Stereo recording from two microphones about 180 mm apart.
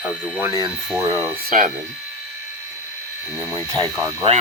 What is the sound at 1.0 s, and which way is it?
Speech, 20° right (ahead or behind).